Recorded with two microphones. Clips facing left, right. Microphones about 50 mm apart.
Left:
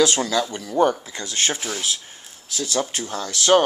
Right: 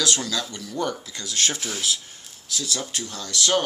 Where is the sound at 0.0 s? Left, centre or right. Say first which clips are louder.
Left 7 dB; left; by 2.0 s centre.